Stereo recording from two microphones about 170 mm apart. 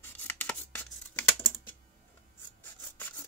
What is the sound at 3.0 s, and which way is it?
Rub, 15° left (ahead or behind).